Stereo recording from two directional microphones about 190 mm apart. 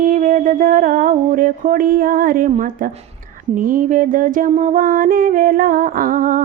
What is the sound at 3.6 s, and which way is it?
Speech, 45° right (ahead or behind).